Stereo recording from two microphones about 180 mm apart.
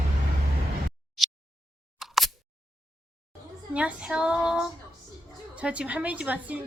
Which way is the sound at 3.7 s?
5° right (ahead or behind).